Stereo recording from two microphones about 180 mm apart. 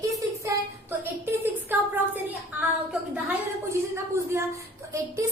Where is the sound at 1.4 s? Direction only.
10° right (ahead or behind).